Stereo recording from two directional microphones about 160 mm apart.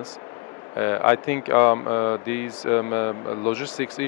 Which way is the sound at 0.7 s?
20° left (ahead or behind).